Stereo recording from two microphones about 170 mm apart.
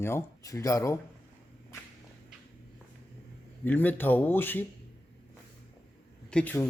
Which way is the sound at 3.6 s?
10° left (ahead or behind).